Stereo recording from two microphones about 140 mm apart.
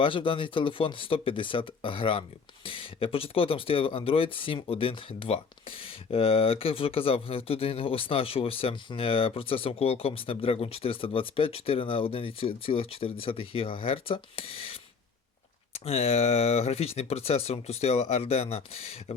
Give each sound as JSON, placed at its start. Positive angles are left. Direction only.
{"t": 0.0, "sound": "speech", "side_deg": 35}
{"t": 15.8, "sound": "speech", "side_deg": 45}